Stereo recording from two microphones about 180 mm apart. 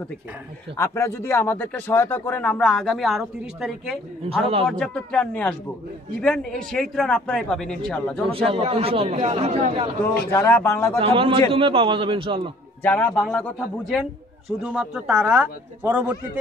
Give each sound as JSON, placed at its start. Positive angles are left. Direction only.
{"t": 0.7, "sound": "a man's voice", "side_deg": 15}
{"t": 8.5, "sound": "speech", "side_deg": -35}
{"t": 10.3, "sound": "speech", "side_deg": 10}
{"t": 11.0, "sound": "a man's voice", "side_deg": -30}
{"t": 12.8, "sound": "a man's voice", "side_deg": 10}